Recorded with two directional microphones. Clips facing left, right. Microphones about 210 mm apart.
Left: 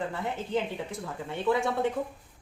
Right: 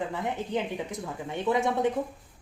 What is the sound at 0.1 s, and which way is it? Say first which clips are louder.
Speech: even; 15° right (ahead or behind).